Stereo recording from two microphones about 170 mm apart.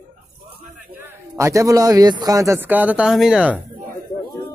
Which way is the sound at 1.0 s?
15° right (ahead or behind).